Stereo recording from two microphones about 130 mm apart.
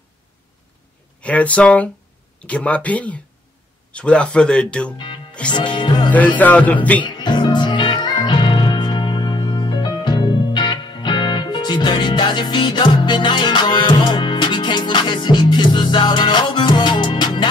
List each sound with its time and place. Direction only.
1.2 s speech: 10° left (ahead or behind)
4.9 s music: 40° left (ahead or behind)
6.1 s speech: 10° left (ahead or behind)
7.0 s music: 35° left (ahead or behind)